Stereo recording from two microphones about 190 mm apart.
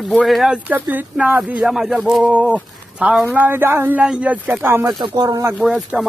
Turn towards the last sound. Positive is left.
turn(degrees=0)  # may be behind; listen again after turning